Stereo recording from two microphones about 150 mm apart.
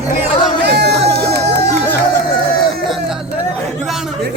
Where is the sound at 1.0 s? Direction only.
90° right.